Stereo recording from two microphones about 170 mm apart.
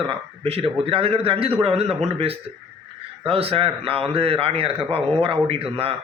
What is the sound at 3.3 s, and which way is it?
A man's voice, 35° right (ahead or behind).